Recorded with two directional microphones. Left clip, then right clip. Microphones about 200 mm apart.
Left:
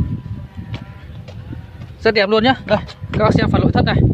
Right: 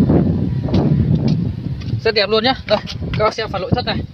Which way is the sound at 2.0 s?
20° left (ahead or behind).